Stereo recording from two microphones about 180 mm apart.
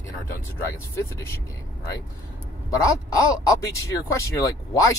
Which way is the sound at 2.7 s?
15° left (ahead or behind).